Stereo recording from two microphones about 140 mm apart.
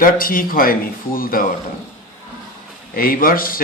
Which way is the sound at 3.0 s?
90° left.